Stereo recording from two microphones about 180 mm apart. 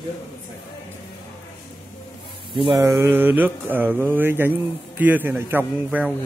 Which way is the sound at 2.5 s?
25° right (ahead or behind).